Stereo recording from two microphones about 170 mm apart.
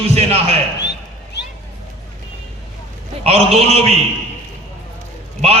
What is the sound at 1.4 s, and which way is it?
Vehicle, 85° left.